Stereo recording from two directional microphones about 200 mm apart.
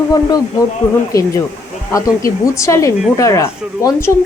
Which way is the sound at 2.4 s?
15° left (ahead or behind).